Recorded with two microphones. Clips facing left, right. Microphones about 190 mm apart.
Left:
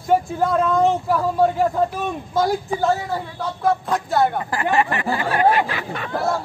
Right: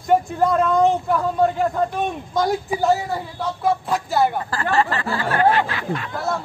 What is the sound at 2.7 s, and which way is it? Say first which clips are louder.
A man's voice: right 1 dB; 10° right (ahead or behind).